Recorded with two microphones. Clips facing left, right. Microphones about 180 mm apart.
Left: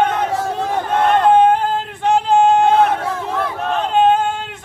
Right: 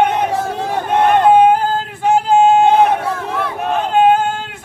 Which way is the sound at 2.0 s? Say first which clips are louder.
Right 2 dB; 5° right (ahead or behind).